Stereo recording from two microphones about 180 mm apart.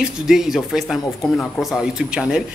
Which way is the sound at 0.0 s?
5° right (ahead or behind).